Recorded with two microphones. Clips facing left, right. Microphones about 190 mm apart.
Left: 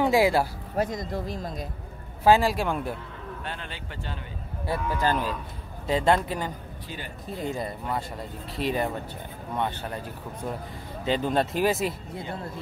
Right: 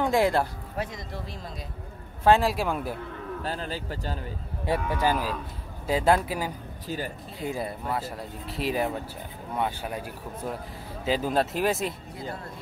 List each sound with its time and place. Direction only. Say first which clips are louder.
0.0 s speech: left 2 dB; 5° left (ahead or behind)
0.7 s speech: left 7 dB; 45° left (ahead or behind)
2.2 s speech: left 1 dB; centre (ahead or behind)
3.4 s speech: right 5 dB; 35° right (ahead or behind)
4.6 s speech: right 1 dB; 10° right (ahead or behind)